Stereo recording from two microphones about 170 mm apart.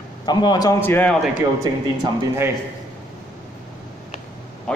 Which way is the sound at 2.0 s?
15° right (ahead or behind).